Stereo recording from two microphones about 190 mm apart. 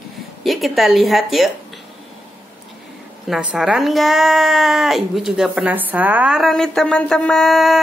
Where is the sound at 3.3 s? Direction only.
5° right (ahead or behind).